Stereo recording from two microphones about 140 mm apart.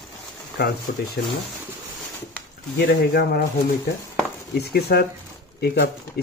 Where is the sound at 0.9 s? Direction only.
90° left.